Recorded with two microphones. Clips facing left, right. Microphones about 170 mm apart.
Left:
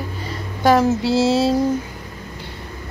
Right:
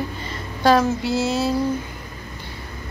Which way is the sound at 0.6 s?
15° left (ahead or behind).